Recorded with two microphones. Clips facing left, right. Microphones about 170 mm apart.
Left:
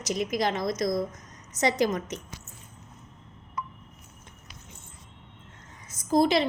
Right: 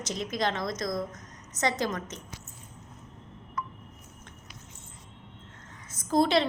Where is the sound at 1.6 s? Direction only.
15° left (ahead or behind).